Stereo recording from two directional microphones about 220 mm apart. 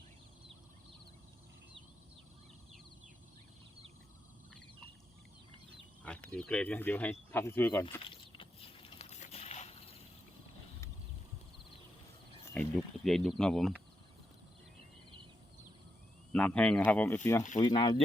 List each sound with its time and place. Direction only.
6.0 s speech: 5° left (ahead or behind)
8.1 s boat: 25° left (ahead or behind)
12.5 s speech: centre (ahead or behind)
16.3 s speech: 5° left (ahead or behind)
17.6 s speech: 20° left (ahead or behind)